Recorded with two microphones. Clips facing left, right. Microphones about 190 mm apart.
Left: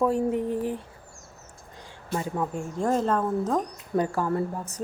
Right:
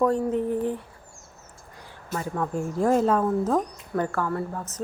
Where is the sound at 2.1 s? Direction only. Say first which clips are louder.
Even; 15° left (ahead or behind).